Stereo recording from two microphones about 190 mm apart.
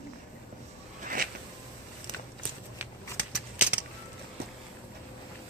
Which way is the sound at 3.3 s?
5° right (ahead or behind).